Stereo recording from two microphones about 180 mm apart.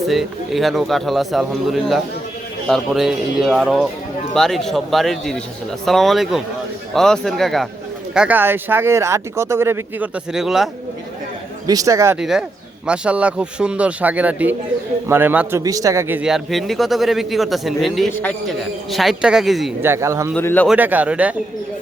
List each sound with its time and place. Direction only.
0.0 s a man's voice: centre (ahead or behind)
10.3 s a man's voice: centre (ahead or behind)
11.6 s speech: 20° right (ahead or behind)
12.2 s a man's voice: 5° right (ahead or behind)
19.8 s speech: 15° right (ahead or behind)
20.3 s speech: 10° left (ahead or behind)
20.7 s speech: 10° right (ahead or behind)